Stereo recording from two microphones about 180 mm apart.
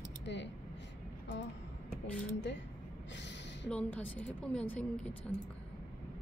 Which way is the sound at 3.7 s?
5° left (ahead or behind).